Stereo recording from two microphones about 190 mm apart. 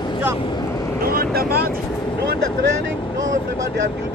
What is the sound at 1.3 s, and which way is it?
Vehicle, 55° right (ahead or behind).